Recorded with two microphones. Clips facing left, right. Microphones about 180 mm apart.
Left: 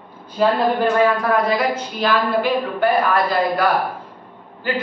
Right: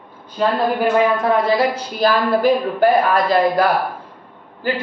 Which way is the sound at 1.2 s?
25° right (ahead or behind).